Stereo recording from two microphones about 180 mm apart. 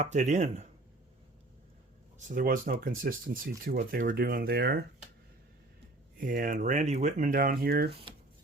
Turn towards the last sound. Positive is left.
turn(degrees=-60)  # may be behind; listen again after turning